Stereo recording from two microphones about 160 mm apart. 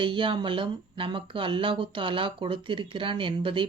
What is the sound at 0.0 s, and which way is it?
Speech, 30° right (ahead or behind).